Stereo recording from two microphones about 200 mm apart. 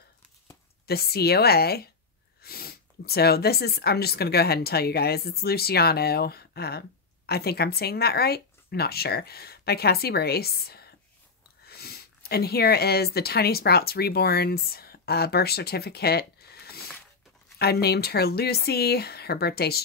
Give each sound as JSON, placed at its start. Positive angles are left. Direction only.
{"t": 0.8, "sound": "speech", "side_deg": 50}